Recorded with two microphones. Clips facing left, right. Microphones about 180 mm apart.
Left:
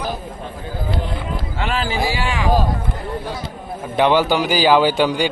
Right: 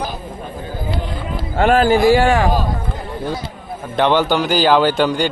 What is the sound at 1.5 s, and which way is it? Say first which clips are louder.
Speech: right 10 dB; 50° right (ahead or behind).